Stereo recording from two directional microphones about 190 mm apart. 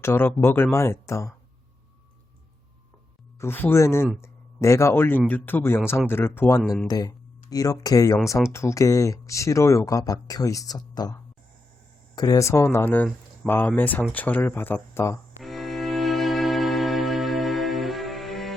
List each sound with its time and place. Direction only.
0.0 s speech: 10° left (ahead or behind)
3.3 s speech: 10° left (ahead or behind)
6.6 s speech: centre (ahead or behind)
6.8 s speech: 20° left (ahead or behind)
15.4 s cello: centre (ahead or behind)